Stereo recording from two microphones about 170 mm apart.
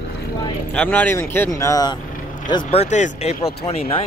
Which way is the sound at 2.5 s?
35° left (ahead or behind).